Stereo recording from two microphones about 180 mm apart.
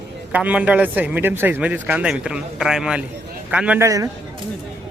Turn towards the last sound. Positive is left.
turn(degrees=-5)  # may be behind; listen again after turning